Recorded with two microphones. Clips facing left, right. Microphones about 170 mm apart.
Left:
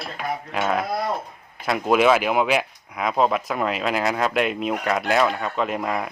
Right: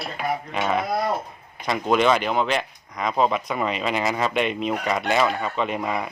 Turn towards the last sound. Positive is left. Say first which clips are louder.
# left 1 dB
turn(degrees=0)  # may be behind; listen again after turning